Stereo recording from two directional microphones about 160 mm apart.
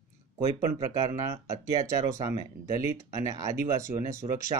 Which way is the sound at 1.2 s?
20° right (ahead or behind).